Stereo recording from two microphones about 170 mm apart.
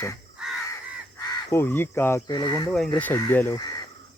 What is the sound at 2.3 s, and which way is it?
Speech, 25° left (ahead or behind).